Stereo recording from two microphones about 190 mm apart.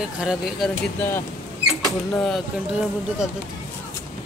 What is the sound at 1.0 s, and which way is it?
Speech, 10° left (ahead or behind).